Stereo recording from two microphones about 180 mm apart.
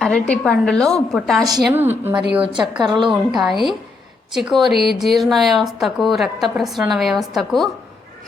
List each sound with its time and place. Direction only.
0.0 s speech: 5° left (ahead or behind)
1.7 s a woman's voice: 10° right (ahead or behind)
2.4 s a woman's voice: 25° right (ahead or behind)
3.1 s speech: centre (ahead or behind)